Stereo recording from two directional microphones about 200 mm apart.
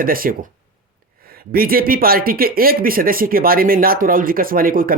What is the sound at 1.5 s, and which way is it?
Speech, 45° right (ahead or behind).